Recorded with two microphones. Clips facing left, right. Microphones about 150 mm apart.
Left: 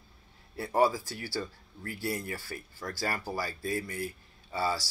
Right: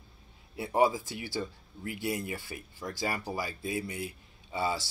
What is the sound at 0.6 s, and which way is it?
Speech, 15° right (ahead or behind).